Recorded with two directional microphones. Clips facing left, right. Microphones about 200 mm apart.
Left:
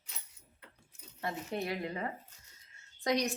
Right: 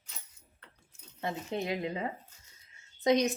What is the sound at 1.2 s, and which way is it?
A woman's voice, 20° right (ahead or behind).